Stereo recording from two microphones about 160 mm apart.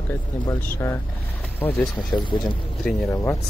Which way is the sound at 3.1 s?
15° left (ahead or behind).